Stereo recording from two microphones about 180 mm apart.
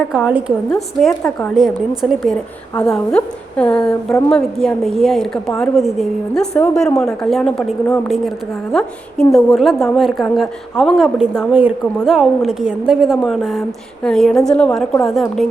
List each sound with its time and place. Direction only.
0.3 s a woman's voice: 5° right (ahead or behind)
0.7 s a woman's voice: 5° left (ahead or behind)